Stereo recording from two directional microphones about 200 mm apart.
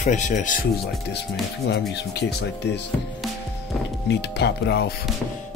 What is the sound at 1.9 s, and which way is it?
Speech, 60° left (ahead or behind).